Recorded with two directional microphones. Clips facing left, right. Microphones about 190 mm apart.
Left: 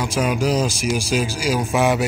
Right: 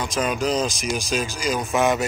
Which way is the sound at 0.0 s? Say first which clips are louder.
Left 3 dB; 10° left (ahead or behind).